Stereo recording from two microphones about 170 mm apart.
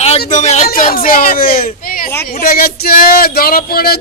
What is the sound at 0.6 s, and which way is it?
Female singing, 55° left (ahead or behind).